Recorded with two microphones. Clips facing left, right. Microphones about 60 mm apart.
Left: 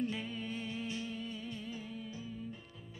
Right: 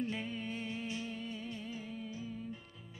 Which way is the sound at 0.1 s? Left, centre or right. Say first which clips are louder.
Even; right.